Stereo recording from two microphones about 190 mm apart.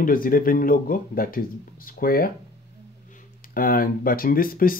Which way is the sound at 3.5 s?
50° left (ahead or behind).